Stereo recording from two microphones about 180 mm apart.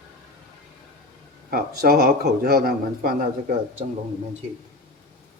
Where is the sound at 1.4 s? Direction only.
55° right (ahead or behind).